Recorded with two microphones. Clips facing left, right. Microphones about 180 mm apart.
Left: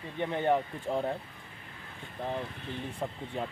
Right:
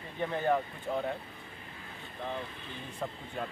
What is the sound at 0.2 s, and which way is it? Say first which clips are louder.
Speech: left 2 dB; 25° left (ahead or behind).